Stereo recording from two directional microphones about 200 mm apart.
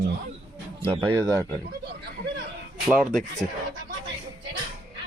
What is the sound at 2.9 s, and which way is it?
Speech, centre (ahead or behind).